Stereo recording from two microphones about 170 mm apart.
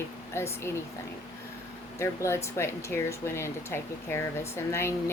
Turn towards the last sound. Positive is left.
turn(degrees=15)  # may be behind; listen again after turning